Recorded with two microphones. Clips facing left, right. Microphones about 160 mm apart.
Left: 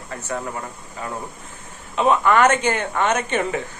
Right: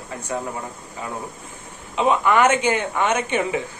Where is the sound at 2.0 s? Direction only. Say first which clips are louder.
Left 1 dB; 15° right (ahead or behind).